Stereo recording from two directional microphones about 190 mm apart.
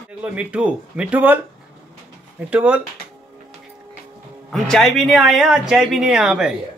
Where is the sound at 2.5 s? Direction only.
10° right (ahead or behind).